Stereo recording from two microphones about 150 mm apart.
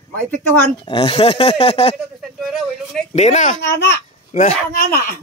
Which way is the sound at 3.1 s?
50° left (ahead or behind).